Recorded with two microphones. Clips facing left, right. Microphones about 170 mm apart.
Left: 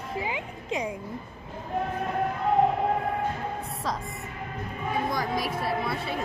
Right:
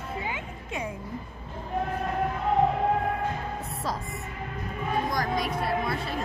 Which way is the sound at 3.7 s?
Centre (ahead or behind).